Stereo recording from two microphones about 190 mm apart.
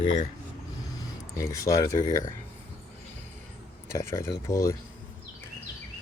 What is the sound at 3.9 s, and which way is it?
Speech, 15° left (ahead or behind).